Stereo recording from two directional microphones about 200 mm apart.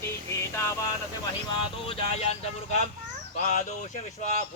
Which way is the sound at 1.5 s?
25° left (ahead or behind).